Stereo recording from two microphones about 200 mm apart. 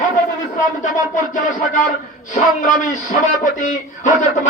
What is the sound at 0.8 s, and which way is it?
A man's voice, 40° left (ahead or behind).